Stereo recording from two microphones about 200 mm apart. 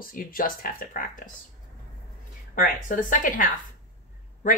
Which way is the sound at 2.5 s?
45° left (ahead or behind).